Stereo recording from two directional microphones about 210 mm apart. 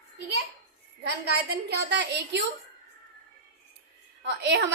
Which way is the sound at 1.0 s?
50° right (ahead or behind).